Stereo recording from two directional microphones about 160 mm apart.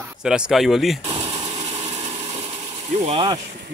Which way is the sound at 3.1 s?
35° right (ahead or behind).